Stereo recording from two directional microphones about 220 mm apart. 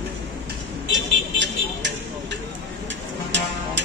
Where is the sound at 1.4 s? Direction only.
55° right (ahead or behind).